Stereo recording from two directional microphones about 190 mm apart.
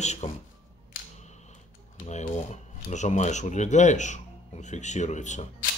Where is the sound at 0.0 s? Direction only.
35° left (ahead or behind).